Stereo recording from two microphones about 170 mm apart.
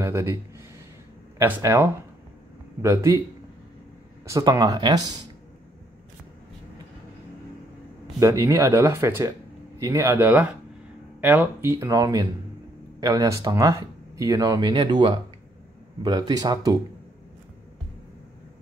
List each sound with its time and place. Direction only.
0.0 s speech: 15° right (ahead or behind)
1.4 s speech: 15° right (ahead or behind)
4.3 s speech: 20° right (ahead or behind)
8.2 s speech: 15° right (ahead or behind)